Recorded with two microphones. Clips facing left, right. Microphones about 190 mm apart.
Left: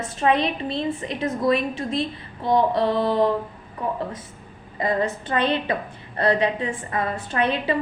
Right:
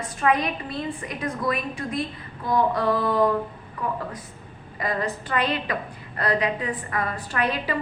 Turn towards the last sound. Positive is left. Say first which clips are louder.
# left 3 dB
turn(degrees=25)  # may be behind; listen again after turning